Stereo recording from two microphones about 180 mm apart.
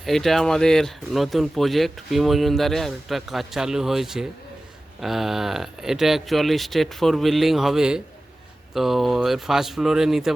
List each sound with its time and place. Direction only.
0.0 s speech: centre (ahead or behind)